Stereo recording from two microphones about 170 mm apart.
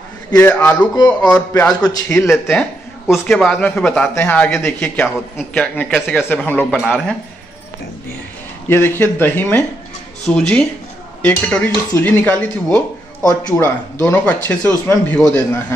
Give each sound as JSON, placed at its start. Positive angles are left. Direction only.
{"t": 0.3, "sound": "a man's voice", "side_deg": 10}
{"t": 0.9, "sound": "a man's voice", "side_deg": 25}
{"t": 2.3, "sound": "a man's voice", "side_deg": 0}
{"t": 6.8, "sound": "a man's voice", "side_deg": 0}
{"t": 8.6, "sound": "a man's voice", "side_deg": 15}
{"t": 13.2, "sound": "speech", "side_deg": 25}
{"t": 13.6, "sound": "a man's voice", "side_deg": 10}